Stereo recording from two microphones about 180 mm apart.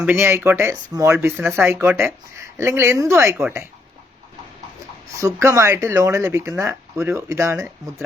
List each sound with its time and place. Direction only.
0.0 s speech: 10° right (ahead or behind)
5.1 s speech: 15° right (ahead or behind)